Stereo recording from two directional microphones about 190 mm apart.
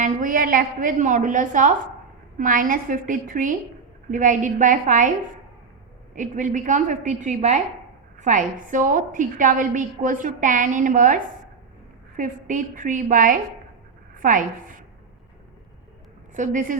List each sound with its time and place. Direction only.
0.0 s a woman's voice: 45° right (ahead or behind)
6.1 s a woman's voice: 40° right (ahead or behind)
16.3 s a woman's voice: 45° right (ahead or behind)